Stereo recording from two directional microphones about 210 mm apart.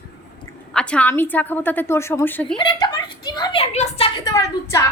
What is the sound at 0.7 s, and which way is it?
A woman's voice, 5° left (ahead or behind).